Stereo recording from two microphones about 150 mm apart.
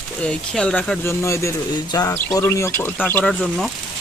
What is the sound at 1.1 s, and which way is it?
Speech, 20° left (ahead or behind).